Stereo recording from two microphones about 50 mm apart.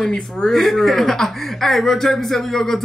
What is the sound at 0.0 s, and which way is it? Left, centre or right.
Speech, centre.